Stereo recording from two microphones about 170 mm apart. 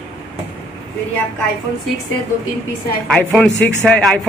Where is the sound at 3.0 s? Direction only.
5° left (ahead or behind).